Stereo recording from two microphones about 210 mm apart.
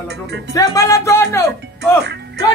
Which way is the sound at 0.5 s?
15° left (ahead or behind).